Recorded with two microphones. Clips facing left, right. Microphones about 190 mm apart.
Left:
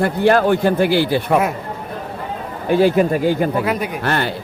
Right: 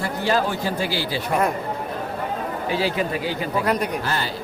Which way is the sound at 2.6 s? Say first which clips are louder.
Left 10 dB; 55° left (ahead or behind).